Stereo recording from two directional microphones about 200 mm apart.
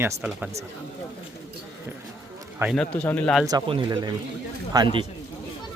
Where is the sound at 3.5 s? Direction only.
25° right (ahead or behind).